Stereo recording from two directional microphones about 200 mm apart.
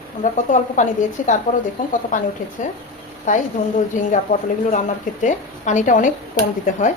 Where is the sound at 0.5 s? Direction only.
40° left (ahead or behind).